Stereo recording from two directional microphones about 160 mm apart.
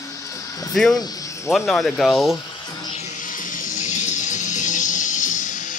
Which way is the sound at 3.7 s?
50° left (ahead or behind).